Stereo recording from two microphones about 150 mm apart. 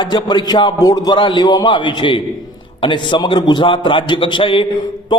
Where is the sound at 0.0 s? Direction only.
30° left (ahead or behind).